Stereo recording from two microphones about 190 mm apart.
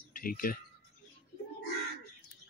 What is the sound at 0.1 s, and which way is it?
Speech, 50° left (ahead or behind).